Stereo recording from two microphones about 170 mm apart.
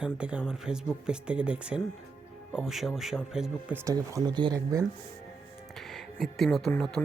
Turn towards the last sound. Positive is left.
turn(degrees=5)  # may be behind; listen again after turning